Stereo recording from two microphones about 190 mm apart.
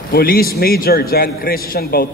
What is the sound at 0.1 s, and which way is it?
A man's voice, 50° left (ahead or behind).